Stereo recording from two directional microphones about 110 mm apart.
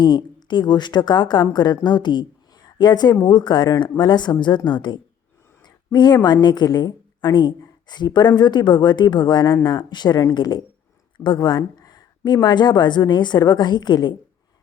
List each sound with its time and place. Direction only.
0.0 s a woman's voice: 45° left (ahead or behind)
5.6 s a sound: 40° left (ahead or behind)
6.2 s speech: 40° left (ahead or behind)